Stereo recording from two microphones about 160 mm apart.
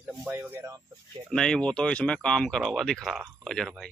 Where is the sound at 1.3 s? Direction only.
5° left (ahead or behind).